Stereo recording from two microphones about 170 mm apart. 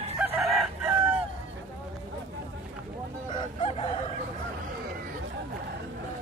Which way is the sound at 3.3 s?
35° left (ahead or behind).